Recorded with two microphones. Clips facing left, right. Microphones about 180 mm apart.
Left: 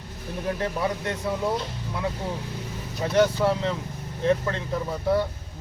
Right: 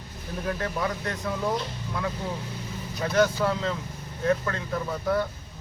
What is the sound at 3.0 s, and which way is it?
Speech, 20° left (ahead or behind).